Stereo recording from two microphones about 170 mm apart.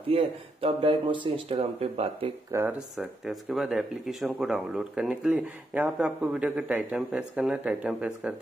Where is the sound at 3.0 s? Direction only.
Centre (ahead or behind).